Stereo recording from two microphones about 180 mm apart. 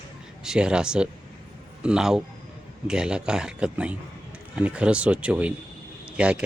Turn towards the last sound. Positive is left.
turn(degrees=-5)  # may be behind; listen again after turning